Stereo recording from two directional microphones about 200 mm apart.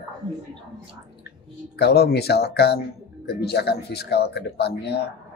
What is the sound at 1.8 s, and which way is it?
Speech, 55° left (ahead or behind).